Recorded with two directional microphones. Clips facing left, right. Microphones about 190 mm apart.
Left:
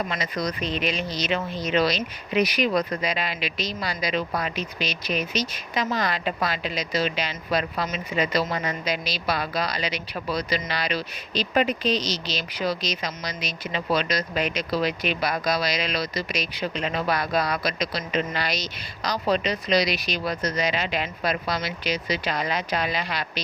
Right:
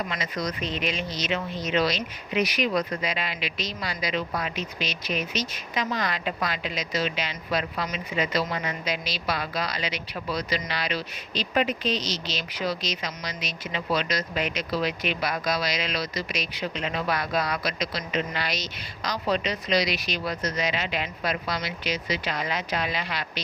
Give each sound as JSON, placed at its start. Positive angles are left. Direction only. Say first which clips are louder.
{"t": 0.1, "sound": "speech", "louder": "left 2 dB", "side_deg": 40}